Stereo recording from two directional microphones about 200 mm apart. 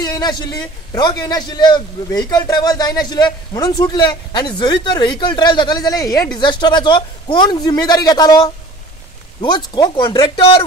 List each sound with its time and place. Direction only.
0.0 s a man's voice: 20° left (ahead or behind)